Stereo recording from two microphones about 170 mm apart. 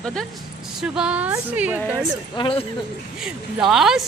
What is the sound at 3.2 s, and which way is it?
Speech, centre (ahead or behind).